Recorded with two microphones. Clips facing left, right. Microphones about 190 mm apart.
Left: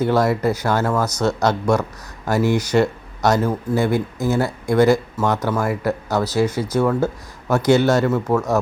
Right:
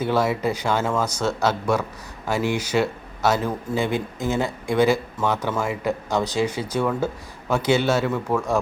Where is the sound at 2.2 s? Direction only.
10° right (ahead or behind).